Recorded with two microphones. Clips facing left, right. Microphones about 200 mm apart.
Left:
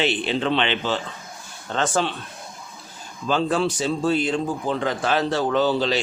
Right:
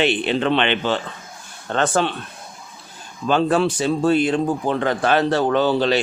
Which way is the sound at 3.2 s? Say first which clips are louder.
Right 4 dB; 60° right (ahead or behind).